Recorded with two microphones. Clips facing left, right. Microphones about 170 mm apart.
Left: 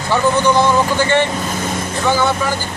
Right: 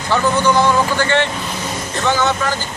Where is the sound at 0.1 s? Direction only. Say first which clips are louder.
Left 1 dB; 15° left (ahead or behind).